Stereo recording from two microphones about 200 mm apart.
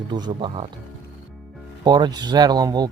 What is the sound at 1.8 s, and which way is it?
A man's voice, 20° right (ahead or behind).